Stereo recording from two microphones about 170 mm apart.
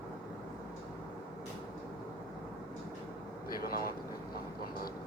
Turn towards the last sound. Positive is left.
turn(degrees=60)  # may be behind; listen again after turning